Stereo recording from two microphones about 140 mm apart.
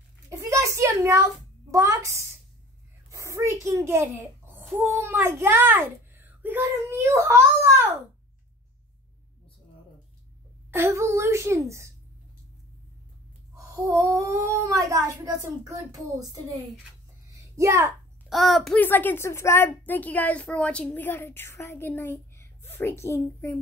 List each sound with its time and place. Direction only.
0.4 s a sound: 20° right (ahead or behind)
1.7 s a child's voice: 25° right (ahead or behind)
10.7 s speech: 20° right (ahead or behind)
13.6 s speech: 20° right (ahead or behind)
17.3 s a sound: 20° right (ahead or behind)
18.3 s a child's voice: centre (ahead or behind)
18.8 s a woman's voice: 15° left (ahead or behind)